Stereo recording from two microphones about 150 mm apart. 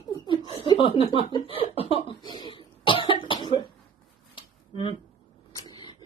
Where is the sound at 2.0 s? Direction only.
35° left (ahead or behind).